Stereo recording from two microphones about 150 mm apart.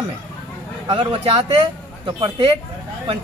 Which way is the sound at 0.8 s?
35° right (ahead or behind).